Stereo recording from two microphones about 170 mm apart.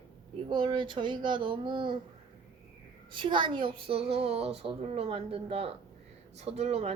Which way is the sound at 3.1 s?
30° right (ahead or behind).